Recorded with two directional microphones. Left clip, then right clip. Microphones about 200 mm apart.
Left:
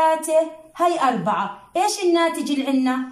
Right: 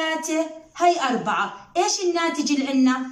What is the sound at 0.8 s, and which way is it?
A woman's voice, 35° left (ahead or behind).